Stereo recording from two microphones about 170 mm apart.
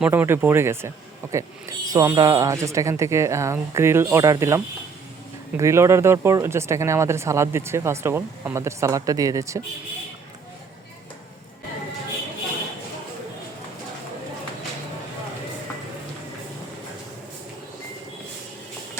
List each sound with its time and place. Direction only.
0.0 s speech: 10° right (ahead or behind)